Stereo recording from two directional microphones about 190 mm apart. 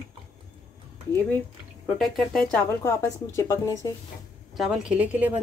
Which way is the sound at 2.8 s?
15° left (ahead or behind).